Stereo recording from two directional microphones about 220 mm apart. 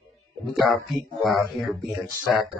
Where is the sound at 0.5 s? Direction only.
Centre (ahead or behind).